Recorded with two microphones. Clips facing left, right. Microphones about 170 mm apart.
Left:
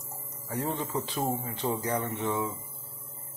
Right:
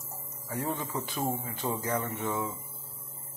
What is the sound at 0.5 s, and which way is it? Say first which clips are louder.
Speech: left 2 dB; 20° left (ahead or behind).